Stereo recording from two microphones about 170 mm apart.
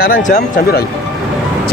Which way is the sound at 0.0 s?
60° left (ahead or behind).